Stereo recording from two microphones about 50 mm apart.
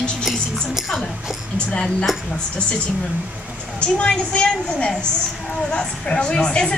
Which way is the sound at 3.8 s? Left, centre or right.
Centre.